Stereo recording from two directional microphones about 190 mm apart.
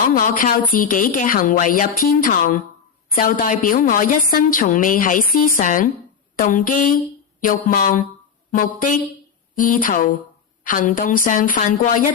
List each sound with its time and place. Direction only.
0.1 s a woman's voice: 45° left (ahead or behind)